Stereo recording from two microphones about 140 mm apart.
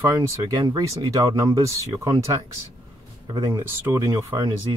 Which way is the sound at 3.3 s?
20° right (ahead or behind).